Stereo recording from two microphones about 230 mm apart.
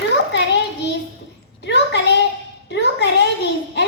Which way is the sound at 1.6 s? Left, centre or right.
Left.